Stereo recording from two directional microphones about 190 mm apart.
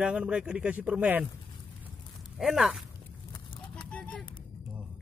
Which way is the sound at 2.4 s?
Centre (ahead or behind).